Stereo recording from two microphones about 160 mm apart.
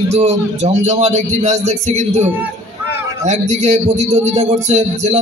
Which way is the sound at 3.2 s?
45° right (ahead or behind).